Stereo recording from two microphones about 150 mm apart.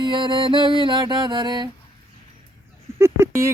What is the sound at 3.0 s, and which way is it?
Speech, 15° right (ahead or behind).